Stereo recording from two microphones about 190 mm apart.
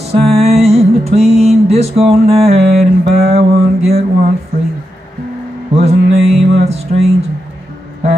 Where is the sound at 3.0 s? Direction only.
35° right (ahead or behind).